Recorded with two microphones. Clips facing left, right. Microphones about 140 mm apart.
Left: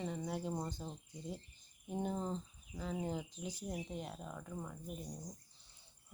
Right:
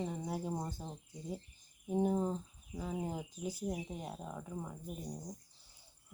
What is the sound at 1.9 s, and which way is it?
Speech, 5° right (ahead or behind).